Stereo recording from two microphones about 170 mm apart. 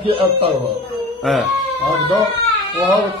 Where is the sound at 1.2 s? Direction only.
Centre (ahead or behind).